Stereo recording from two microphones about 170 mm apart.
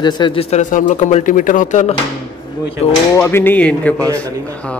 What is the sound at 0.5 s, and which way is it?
Speech, 45° left (ahead or behind).